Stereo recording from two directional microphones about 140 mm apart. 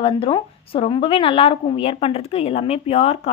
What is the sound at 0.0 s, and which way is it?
A woman's voice, 40° left (ahead or behind).